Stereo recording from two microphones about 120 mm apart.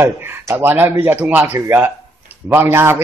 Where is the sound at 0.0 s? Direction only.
20° right (ahead or behind).